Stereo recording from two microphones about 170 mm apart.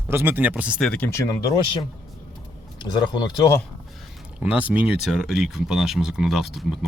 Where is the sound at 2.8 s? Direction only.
25° left (ahead or behind).